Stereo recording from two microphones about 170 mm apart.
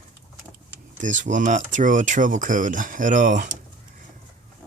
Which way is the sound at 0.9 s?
50° right (ahead or behind).